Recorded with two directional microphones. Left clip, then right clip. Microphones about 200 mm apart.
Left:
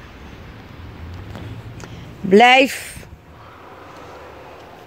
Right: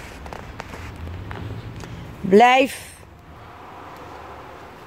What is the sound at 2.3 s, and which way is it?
Speech, 20° left (ahead or behind).